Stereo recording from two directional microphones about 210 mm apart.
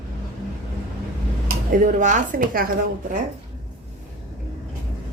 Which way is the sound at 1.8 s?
35° right (ahead or behind).